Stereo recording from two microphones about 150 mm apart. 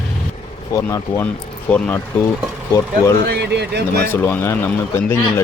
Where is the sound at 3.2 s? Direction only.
90° right.